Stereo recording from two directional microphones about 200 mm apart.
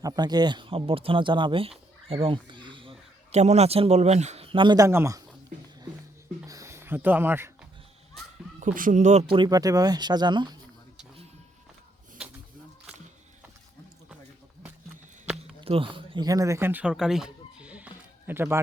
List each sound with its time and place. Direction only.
0.0 s a man's voice: 20° right (ahead or behind)
6.4 s a sound: 15° right (ahead or behind)
8.6 s a man's voice: 40° right (ahead or behind)
9.3 s speech: 20° right (ahead or behind)
15.6 s speech: 25° right (ahead or behind); by 18.6 s 10° right (ahead or behind)